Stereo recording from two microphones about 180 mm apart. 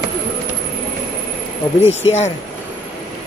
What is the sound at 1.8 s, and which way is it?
Speech, 40° left (ahead or behind).